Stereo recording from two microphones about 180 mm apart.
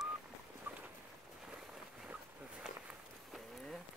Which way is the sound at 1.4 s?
5° right (ahead or behind).